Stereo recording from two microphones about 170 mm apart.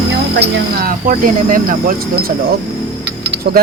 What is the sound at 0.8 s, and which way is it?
Speech, 55° right (ahead or behind).